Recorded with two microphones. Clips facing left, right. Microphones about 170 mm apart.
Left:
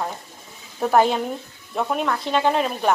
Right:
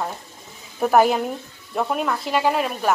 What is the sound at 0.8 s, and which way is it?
A woman's voice, 5° right (ahead or behind).